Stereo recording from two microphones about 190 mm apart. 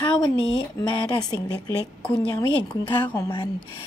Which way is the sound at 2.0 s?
5° left (ahead or behind).